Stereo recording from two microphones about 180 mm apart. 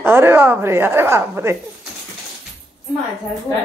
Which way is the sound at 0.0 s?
15° right (ahead or behind).